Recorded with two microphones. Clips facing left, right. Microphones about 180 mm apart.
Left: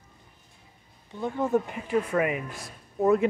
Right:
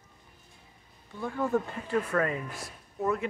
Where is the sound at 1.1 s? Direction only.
20° left (ahead or behind).